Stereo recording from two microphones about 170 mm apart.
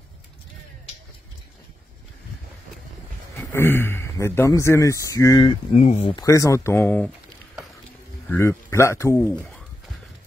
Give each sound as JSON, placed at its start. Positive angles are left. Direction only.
{"t": 3.5, "sound": "speech", "side_deg": 15}
{"t": 5.8, "sound": "speech", "side_deg": 40}
{"t": 6.0, "sound": "speech", "side_deg": 20}
{"t": 8.3, "sound": "speech", "side_deg": 15}